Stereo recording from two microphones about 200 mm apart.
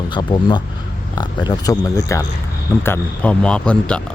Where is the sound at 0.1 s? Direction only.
20° left (ahead or behind).